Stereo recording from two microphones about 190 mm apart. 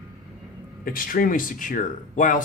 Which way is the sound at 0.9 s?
50° left (ahead or behind).